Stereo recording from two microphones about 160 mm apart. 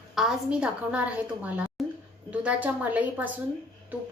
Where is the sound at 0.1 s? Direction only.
5° right (ahead or behind).